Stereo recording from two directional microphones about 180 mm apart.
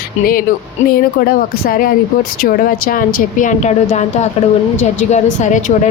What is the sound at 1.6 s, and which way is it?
A woman's voice, 55° left (ahead or behind).